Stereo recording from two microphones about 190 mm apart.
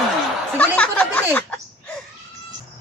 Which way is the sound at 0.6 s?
5° left (ahead or behind).